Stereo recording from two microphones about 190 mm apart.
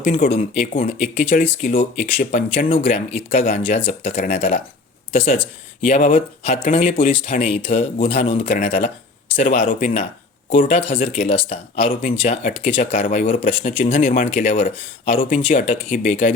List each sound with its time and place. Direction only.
0.0 s speech: 40° left (ahead or behind)